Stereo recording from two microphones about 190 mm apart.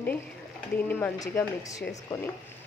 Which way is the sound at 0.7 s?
10° left (ahead or behind).